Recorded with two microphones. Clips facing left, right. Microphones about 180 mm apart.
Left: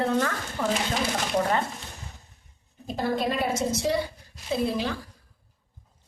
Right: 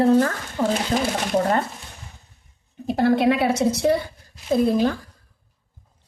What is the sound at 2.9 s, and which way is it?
A woman's voice, 70° right (ahead or behind).